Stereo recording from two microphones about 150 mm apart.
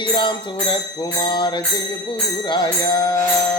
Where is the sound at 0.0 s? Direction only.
30° left (ahead or behind).